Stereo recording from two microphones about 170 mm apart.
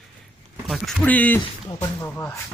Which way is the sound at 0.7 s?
Centre (ahead or behind).